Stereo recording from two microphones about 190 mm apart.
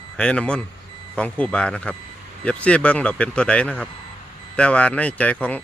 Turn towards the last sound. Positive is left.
turn(degrees=10)  # may be behind; listen again after turning